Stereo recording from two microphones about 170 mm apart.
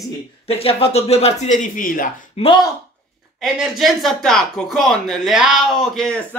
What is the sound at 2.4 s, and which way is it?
Speech, 35° left (ahead or behind).